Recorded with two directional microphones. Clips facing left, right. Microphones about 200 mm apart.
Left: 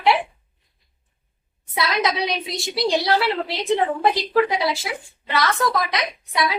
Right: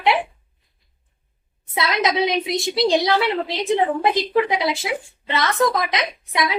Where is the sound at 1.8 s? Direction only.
20° right (ahead or behind).